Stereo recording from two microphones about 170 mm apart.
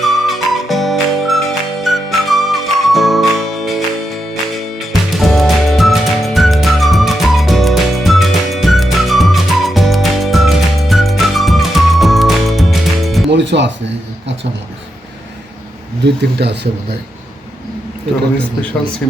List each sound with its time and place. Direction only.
0.0 s music: centre (ahead or behind)
4.8 s music: centre (ahead or behind)
13.3 s music: 90° right
16.0 s speech: 85° right